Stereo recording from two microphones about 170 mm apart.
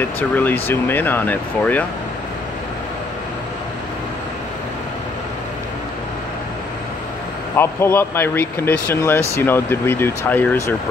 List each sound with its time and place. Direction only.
0.4 s speech: 10° left (ahead or behind)
7.5 s speech: 15° left (ahead or behind)